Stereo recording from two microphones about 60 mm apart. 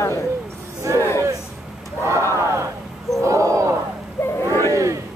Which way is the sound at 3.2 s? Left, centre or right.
Right.